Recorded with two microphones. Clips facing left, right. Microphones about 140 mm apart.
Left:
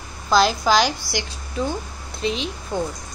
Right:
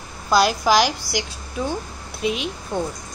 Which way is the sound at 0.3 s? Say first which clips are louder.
Even; 5° right (ahead or behind).